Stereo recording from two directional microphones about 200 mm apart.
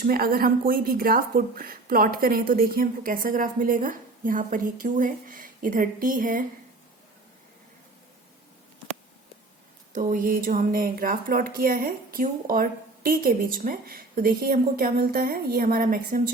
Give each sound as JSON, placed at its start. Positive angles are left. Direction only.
{"t": 0.0, "sound": "speech", "side_deg": -45}
{"t": 9.9, "sound": "speech", "side_deg": -40}